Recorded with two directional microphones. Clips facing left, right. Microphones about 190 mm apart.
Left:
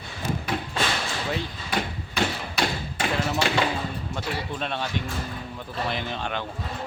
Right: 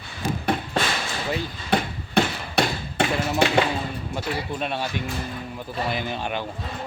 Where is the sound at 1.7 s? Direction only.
60° right (ahead or behind).